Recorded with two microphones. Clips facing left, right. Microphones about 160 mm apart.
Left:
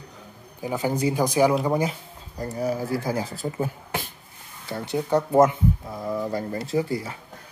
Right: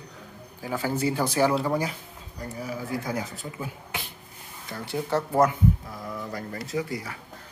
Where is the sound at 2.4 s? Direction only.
40° left (ahead or behind).